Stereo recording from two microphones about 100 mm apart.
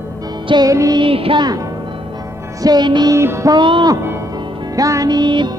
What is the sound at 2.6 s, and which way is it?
Music, 45° right (ahead or behind).